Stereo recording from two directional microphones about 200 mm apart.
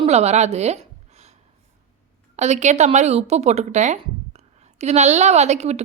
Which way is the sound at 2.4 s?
35° right (ahead or behind).